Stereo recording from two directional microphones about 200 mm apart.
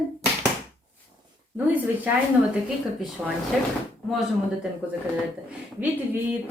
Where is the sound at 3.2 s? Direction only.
5° right (ahead or behind).